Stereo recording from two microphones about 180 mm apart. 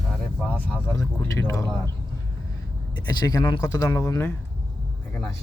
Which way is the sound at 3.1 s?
20° left (ahead or behind).